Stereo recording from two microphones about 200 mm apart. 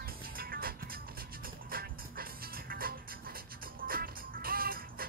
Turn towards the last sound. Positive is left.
turn(degrees=-45)  # may be behind; listen again after turning